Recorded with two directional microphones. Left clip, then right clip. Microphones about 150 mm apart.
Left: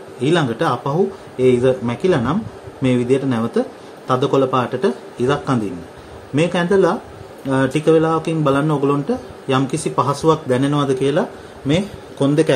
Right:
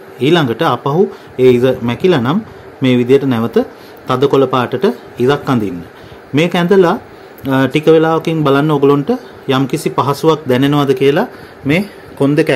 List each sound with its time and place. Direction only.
0.2 s speech: 70° right (ahead or behind)
12.2 s a man's voice: 45° right (ahead or behind)